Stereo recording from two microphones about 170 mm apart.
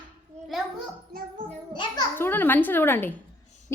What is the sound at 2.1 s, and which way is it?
Speech, 10° left (ahead or behind).